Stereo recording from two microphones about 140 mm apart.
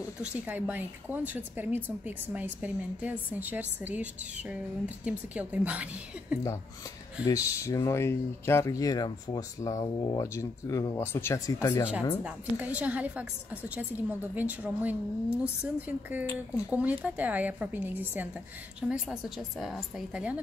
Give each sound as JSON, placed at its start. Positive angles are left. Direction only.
{"t": 0.3, "sound": "a woman's voice", "side_deg": -10}
{"t": 7.2, "sound": "speech", "side_deg": 25}
{"t": 12.2, "sound": "a woman's voice", "side_deg": -10}